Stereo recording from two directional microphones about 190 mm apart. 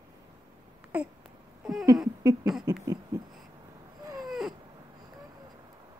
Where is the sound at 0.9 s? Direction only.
5° right (ahead or behind).